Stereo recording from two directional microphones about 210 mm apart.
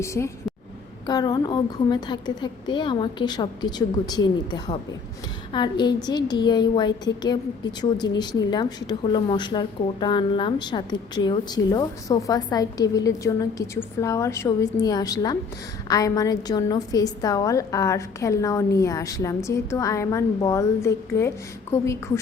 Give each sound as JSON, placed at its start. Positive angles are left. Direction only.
{"t": 0.0, "sound": "a woman's voice", "side_deg": 15}